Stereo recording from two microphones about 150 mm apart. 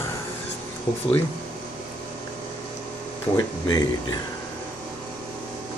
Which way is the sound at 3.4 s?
25° left (ahead or behind).